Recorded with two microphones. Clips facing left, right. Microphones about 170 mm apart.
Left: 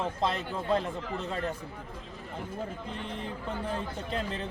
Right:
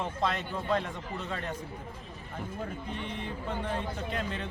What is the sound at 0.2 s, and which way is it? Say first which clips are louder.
Speech: left 1 dB; 30° left (ahead or behind).